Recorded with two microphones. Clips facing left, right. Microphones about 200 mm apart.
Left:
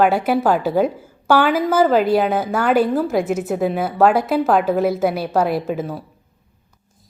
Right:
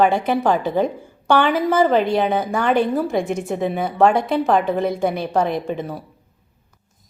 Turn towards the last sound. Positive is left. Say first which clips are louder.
# left 2 dB
turn(degrees=5)  # may be behind; listen again after turning